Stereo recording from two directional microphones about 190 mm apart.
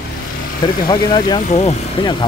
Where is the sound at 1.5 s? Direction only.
35° left (ahead or behind).